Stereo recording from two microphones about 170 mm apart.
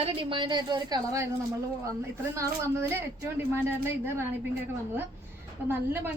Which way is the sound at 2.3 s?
15° right (ahead or behind).